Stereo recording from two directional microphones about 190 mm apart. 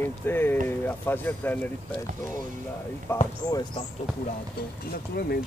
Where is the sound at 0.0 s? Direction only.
10° left (ahead or behind).